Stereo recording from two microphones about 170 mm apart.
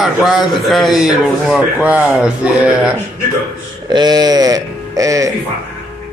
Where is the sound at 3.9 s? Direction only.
25° right (ahead or behind).